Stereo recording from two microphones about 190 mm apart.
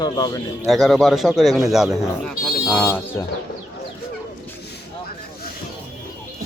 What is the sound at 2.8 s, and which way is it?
Speech, 10° left (ahead or behind).